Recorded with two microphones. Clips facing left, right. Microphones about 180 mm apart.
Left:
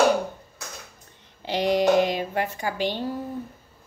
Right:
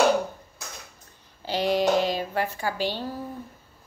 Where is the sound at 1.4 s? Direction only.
20° left (ahead or behind).